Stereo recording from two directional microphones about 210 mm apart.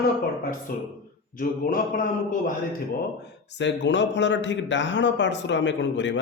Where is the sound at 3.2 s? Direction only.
55° left (ahead or behind).